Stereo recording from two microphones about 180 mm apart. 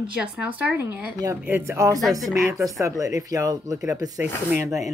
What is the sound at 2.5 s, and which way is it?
A woman's voice, 20° right (ahead or behind).